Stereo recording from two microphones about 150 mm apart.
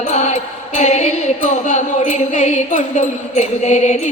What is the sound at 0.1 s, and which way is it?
Music, 50° left (ahead or behind).